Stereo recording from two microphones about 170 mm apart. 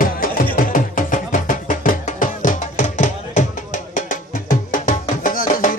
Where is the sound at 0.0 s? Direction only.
55° left (ahead or behind).